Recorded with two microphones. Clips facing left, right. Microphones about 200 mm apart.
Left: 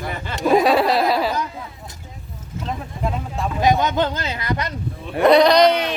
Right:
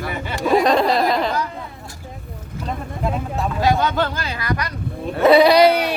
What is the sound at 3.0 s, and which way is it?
Speech, centre (ahead or behind).